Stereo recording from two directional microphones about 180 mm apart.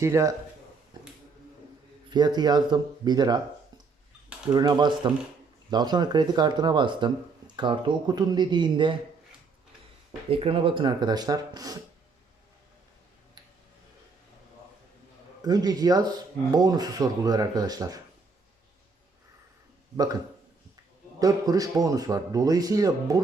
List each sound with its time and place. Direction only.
0.0 s a man's voice: 15° right (ahead or behind)
2.0 s speech: 25° right (ahead or behind)
4.5 s speech: 25° right (ahead or behind)
10.2 s speech: 30° right (ahead or behind)
15.4 s speech: 20° right (ahead or behind)
21.2 s speech: 20° right (ahead or behind)